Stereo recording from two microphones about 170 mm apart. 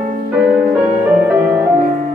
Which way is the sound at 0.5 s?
5° right (ahead or behind).